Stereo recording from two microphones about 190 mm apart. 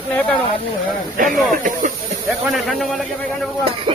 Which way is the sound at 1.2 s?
45° right (ahead or behind).